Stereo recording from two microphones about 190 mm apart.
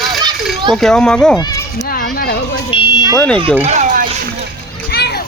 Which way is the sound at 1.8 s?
50° left (ahead or behind).